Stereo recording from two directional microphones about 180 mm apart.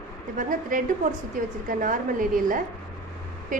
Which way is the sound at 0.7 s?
50° right (ahead or behind).